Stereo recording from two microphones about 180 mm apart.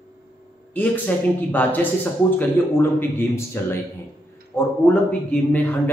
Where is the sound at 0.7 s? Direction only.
10° left (ahead or behind).